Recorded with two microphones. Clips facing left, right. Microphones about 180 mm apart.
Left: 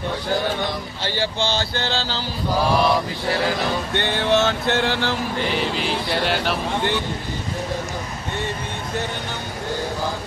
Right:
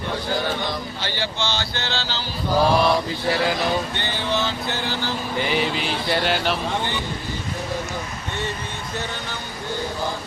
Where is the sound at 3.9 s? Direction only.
60° left (ahead or behind).